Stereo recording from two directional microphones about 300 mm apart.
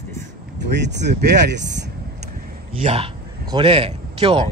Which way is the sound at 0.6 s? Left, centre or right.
Right.